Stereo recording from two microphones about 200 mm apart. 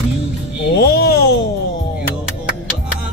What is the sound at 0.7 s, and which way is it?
Speech, 55° left (ahead or behind).